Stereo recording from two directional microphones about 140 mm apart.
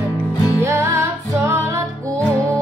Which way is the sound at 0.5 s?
20° right (ahead or behind).